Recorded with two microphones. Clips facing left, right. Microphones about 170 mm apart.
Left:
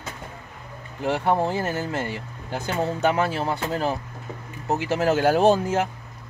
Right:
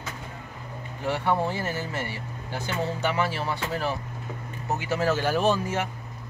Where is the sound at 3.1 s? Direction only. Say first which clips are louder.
Left 3 dB; 45° left (ahead or behind).